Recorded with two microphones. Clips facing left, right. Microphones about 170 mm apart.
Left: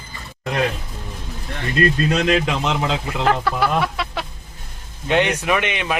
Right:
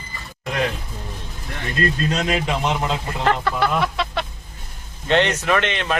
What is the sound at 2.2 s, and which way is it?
Speech, 90° left.